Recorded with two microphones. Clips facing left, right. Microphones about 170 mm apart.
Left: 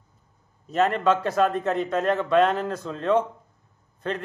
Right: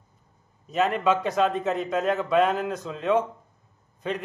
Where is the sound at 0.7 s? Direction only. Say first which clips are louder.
Left 2 dB; centre (ahead or behind).